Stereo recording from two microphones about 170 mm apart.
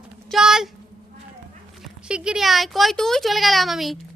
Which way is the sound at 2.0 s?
5° right (ahead or behind).